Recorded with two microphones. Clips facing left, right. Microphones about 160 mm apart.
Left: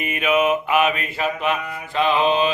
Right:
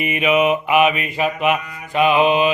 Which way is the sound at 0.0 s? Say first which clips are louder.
Right 3 dB; 5° right (ahead or behind).